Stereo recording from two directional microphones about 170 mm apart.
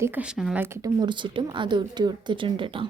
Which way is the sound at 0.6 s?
20° right (ahead or behind).